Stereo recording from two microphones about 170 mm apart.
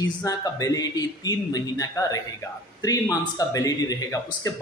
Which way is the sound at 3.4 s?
20° left (ahead or behind).